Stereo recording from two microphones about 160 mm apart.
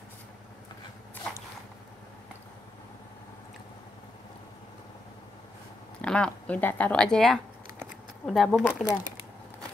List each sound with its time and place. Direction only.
5.9 s speech: 5° left (ahead or behind)
8.6 s speech: 10° left (ahead or behind)